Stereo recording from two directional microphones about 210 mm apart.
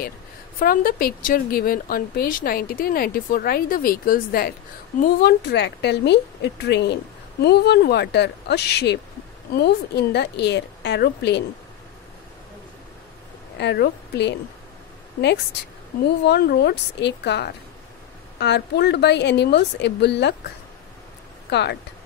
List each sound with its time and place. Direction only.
0.6 s speech: 45° left (ahead or behind)
13.6 s a woman's voice: 55° left (ahead or behind)
16.3 s a woman's voice: 50° left (ahead or behind)
21.5 s speech: 55° left (ahead or behind)